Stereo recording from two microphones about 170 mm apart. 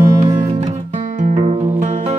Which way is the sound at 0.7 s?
45° right (ahead or behind).